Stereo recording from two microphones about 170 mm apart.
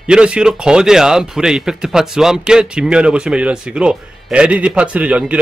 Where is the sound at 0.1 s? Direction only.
5° right (ahead or behind).